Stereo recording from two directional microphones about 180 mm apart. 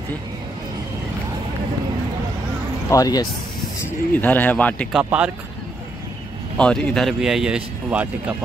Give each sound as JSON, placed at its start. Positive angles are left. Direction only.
{"t": 2.9, "sound": "speech", "side_deg": 20}
{"t": 4.1, "sound": "speech", "side_deg": 10}
{"t": 4.9, "sound": "speech", "side_deg": -5}
{"t": 6.6, "sound": "speech", "side_deg": 5}